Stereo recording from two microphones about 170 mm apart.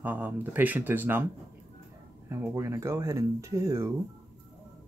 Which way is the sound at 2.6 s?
20° right (ahead or behind).